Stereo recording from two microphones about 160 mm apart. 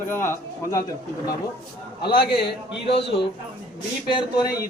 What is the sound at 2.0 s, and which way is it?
Speech, 35° left (ahead or behind).